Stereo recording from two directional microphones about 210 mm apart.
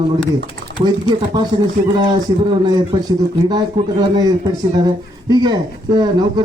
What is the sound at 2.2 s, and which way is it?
A man's voice, 20° right (ahead or behind).